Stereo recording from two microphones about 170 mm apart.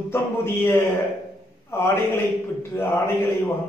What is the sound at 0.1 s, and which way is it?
Speech, 15° left (ahead or behind).